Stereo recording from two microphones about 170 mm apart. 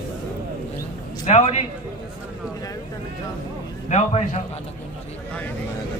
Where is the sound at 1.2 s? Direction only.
40° left (ahead or behind).